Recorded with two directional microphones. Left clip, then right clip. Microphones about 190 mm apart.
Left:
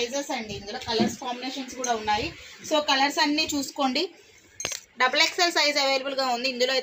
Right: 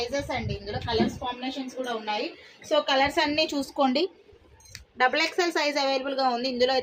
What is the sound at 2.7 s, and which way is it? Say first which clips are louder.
Speech: even; 25° right (ahead or behind).